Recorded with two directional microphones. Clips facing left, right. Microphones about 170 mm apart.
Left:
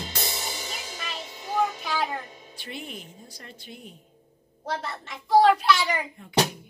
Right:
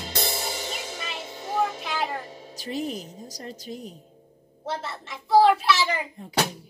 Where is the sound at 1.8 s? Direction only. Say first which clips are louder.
Even; centre (ahead or behind).